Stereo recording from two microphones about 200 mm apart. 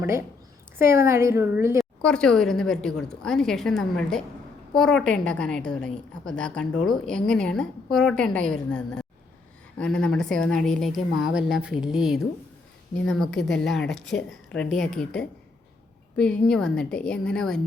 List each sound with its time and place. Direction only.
0.0 s a woman's voice: 10° right (ahead or behind)
1.8 s a woman's voice: 5° left (ahead or behind)